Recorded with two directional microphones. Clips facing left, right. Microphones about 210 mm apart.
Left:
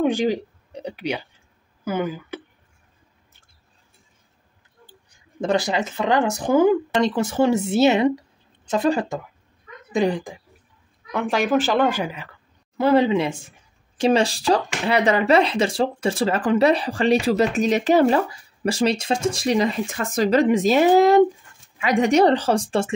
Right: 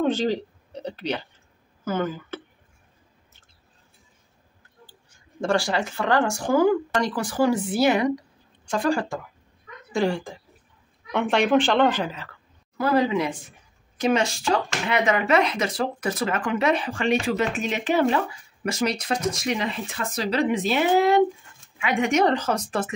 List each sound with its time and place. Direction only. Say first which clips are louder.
0.0 s speech: left 2 dB; 15° left (ahead or behind)
4.8 s speech: left 5 dB; 15° left (ahead or behind)
11.1 s a woman's voice: even; centre (ahead or behind)
12.7 s speech: left 4 dB; 25° left (ahead or behind)